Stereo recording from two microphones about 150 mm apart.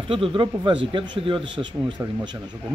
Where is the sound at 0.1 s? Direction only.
35° right (ahead or behind).